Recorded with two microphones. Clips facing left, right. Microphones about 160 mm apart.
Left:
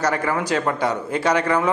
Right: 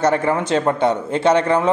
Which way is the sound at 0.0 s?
25° right (ahead or behind).